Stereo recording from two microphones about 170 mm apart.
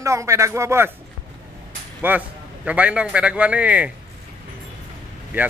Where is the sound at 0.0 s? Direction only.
15° right (ahead or behind).